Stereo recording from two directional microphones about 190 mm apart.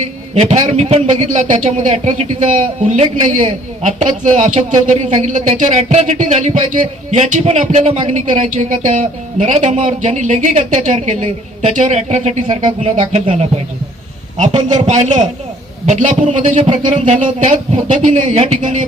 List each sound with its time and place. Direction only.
0.3 s speech: 35° right (ahead or behind)